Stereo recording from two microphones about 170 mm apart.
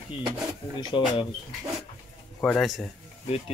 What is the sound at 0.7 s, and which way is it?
Speech, 30° left (ahead or behind).